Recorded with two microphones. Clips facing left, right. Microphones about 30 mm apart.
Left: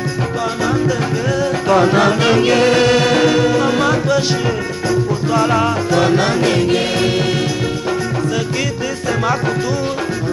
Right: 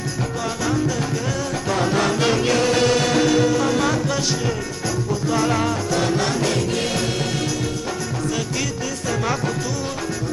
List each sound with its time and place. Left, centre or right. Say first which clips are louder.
1.7 s music: left 8 dB; left
5.3 s music: left 5 dB; left